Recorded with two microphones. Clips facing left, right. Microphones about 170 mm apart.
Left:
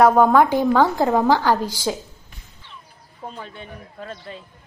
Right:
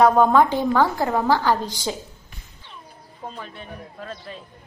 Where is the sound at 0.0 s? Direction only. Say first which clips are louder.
Left 1 dB; 10° left (ahead or behind).